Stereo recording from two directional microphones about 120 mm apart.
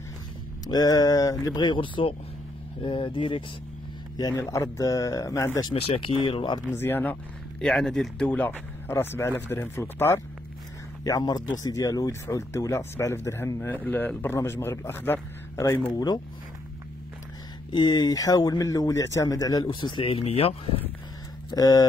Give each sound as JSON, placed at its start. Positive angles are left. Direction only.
{"t": 0.7, "sound": "speech", "side_deg": 35}
{"t": 4.2, "sound": "speech", "side_deg": 30}
{"t": 5.8, "sound": "speech", "side_deg": 50}
{"t": 6.7, "sound": "speech", "side_deg": 20}
{"t": 7.6, "sound": "speech", "side_deg": 5}
{"t": 11.1, "sound": "speech", "side_deg": 35}
{"t": 15.9, "sound": "speech", "side_deg": 35}
{"t": 17.7, "sound": "speech", "side_deg": 35}
{"t": 19.6, "sound": "speech", "side_deg": 45}
{"t": 21.5, "sound": "speech", "side_deg": 35}